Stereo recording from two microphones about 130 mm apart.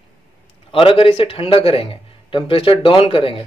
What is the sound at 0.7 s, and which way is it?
A man's voice, 45° left (ahead or behind).